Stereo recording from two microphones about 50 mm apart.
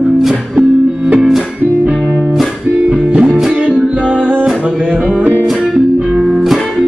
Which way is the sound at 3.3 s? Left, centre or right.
Centre.